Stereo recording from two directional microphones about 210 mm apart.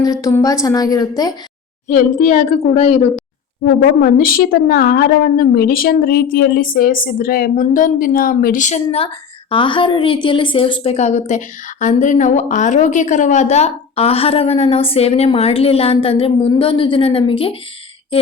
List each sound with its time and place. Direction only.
0.0 s a woman's voice: 15° left (ahead or behind)
1.9 s a woman's voice: 35° left (ahead or behind)
3.6 s a woman's voice: 75° left (ahead or behind)
4.0 s a woman's voice: 45° left (ahead or behind); by 17.6 s 25° left (ahead or behind)